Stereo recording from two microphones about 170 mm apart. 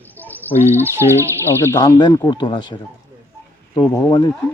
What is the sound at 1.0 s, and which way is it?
Speech, 15° right (ahead or behind).